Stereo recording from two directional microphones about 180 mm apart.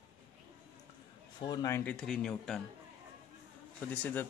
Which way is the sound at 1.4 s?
20° left (ahead or behind).